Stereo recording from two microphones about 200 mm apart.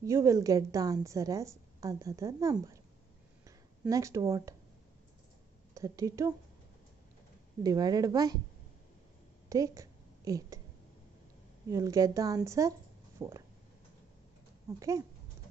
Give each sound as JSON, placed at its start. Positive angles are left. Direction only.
{"t": 0.0, "sound": "a woman's voice", "side_deg": -15}
{"t": 3.9, "sound": "a woman's voice", "side_deg": -15}
{"t": 5.8, "sound": "a woman's voice", "side_deg": -15}
{"t": 7.6, "sound": "a woman's voice", "side_deg": -20}
{"t": 9.5, "sound": "a sound", "side_deg": -15}
{"t": 11.7, "sound": "a woman's voice", "side_deg": -15}
{"t": 14.8, "sound": "a woman's voice", "side_deg": -15}